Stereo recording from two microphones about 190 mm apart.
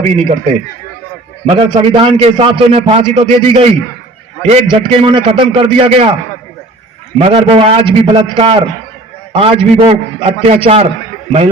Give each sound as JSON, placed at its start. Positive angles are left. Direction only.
{"t": 0.0, "sound": "a man's voice", "side_deg": -30}
{"t": 7.3, "sound": "a man's voice", "side_deg": -30}